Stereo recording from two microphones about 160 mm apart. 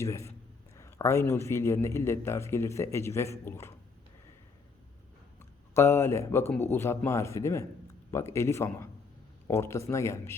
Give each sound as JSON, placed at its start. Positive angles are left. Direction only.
{"t": 0.0, "sound": "a man's voice", "side_deg": 20}
{"t": 5.4, "sound": "a man's voice", "side_deg": 15}